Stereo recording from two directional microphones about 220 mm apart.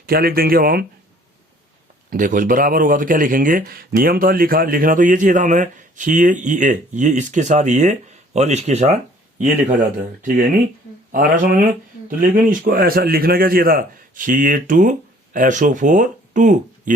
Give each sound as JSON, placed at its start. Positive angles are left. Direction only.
{"t": 0.0, "sound": "speech", "side_deg": -45}
{"t": 2.0, "sound": "speech", "side_deg": -35}
{"t": 11.1, "sound": "speech", "side_deg": -40}